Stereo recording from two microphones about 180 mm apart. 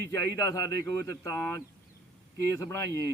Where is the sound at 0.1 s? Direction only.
20° left (ahead or behind).